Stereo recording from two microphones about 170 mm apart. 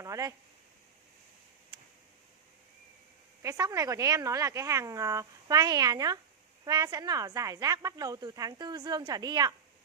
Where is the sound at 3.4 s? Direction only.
20° right (ahead or behind).